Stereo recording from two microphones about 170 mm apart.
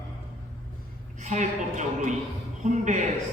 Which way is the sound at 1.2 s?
45° right (ahead or behind).